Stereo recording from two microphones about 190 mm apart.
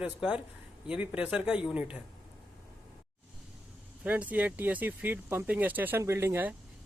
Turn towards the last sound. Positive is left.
turn(degrees=-10)  # may be behind; listen again after turning